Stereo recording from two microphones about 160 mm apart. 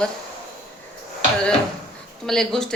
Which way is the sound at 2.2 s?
Centre (ahead or behind).